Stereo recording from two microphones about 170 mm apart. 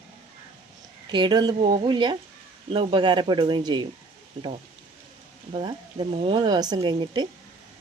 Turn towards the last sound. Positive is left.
turn(degrees=-25)  # may be behind; listen again after turning